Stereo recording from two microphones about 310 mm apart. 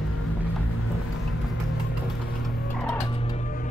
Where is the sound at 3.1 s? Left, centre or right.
Centre.